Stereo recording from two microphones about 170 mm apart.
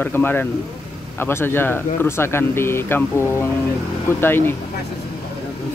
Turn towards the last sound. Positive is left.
turn(degrees=15)  # may be behind; listen again after turning